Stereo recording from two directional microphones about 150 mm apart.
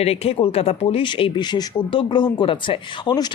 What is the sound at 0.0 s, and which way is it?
Speech, 45° left (ahead or behind).